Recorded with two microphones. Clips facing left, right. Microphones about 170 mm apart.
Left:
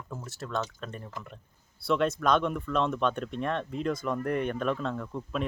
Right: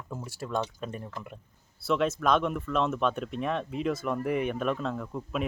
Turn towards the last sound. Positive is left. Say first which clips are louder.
# even
turn(degrees=-5)  # may be behind; listen again after turning